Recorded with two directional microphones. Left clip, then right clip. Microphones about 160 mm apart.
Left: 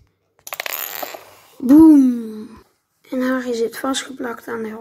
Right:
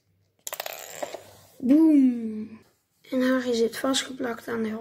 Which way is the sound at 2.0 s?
65° left (ahead or behind).